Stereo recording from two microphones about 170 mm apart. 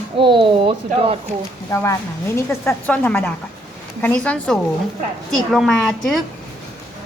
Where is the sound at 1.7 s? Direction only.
20° left (ahead or behind); by 6.2 s centre (ahead or behind).